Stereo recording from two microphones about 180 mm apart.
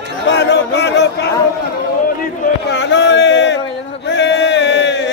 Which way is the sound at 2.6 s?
75° left (ahead or behind).